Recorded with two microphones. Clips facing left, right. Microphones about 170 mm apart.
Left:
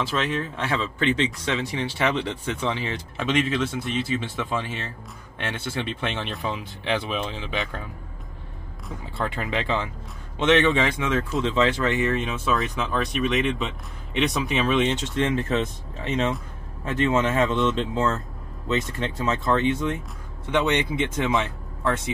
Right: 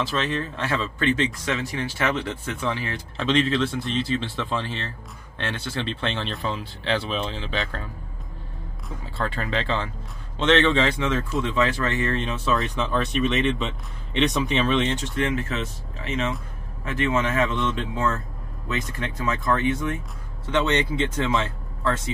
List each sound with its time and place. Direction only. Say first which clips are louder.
0.2 s speech: even; 10° left (ahead or behind)
3.2 s speech: right 2 dB; 5° left (ahead or behind)
9.2 s speech: even; 15° left (ahead or behind)